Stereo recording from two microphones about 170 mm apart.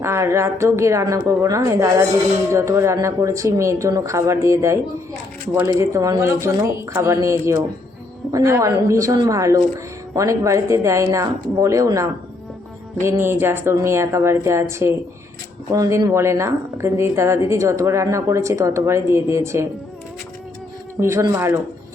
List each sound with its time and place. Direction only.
0.0 s a woman's voice: 15° right (ahead or behind)
21.0 s a woman's voice: 20° right (ahead or behind)